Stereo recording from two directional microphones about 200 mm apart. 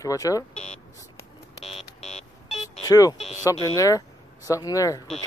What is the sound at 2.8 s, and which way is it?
Speech, 15° left (ahead or behind).